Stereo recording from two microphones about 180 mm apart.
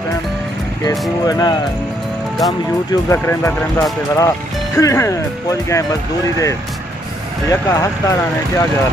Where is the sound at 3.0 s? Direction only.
15° left (ahead or behind).